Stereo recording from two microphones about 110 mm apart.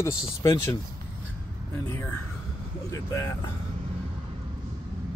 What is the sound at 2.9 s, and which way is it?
Speech, 25° left (ahead or behind).